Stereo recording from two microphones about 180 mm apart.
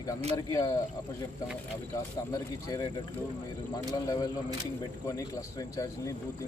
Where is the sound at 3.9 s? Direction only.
20° left (ahead or behind).